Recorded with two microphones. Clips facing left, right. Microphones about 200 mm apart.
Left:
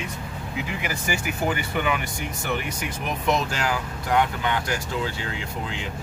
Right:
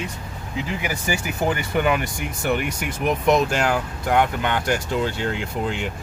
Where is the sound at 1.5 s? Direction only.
45° right (ahead or behind).